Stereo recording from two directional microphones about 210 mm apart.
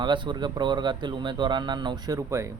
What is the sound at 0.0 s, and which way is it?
Speech, 20° right (ahead or behind).